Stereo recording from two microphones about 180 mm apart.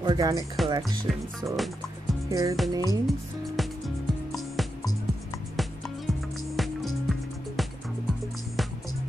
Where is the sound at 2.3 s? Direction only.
20° right (ahead or behind).